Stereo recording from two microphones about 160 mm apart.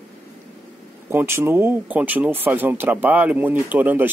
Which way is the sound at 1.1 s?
15° right (ahead or behind).